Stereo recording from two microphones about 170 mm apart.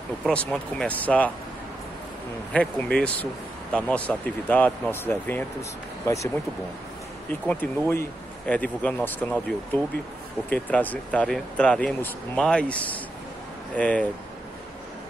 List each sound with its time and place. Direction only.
0.2 s speech: 5° left (ahead or behind)
2.5 s speech: 5° left (ahead or behind)
7.4 s speech: 10° left (ahead or behind)
10.5 s speech: 10° left (ahead or behind)